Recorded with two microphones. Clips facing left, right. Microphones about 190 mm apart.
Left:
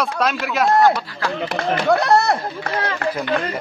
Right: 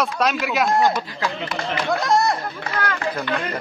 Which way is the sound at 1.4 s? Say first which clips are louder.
Left 8 dB; 65° left (ahead or behind).